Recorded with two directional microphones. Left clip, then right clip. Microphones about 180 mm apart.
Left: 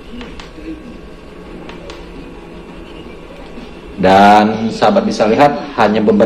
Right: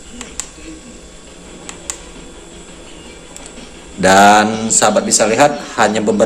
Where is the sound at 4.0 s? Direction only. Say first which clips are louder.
Left 1 dB; 35° right (ahead or behind).